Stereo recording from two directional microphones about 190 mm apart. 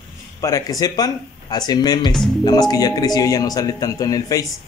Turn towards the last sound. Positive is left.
turn(degrees=20)  # may be behind; listen again after turning